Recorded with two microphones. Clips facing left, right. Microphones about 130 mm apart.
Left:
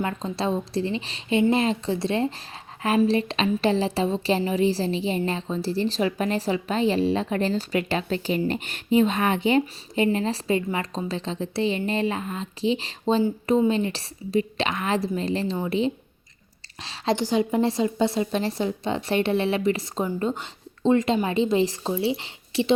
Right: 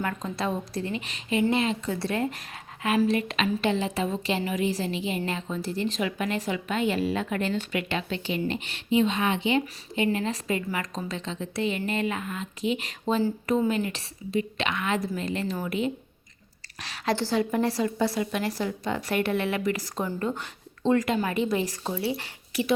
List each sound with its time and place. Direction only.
0.0 s a woman's voice: 25° left (ahead or behind)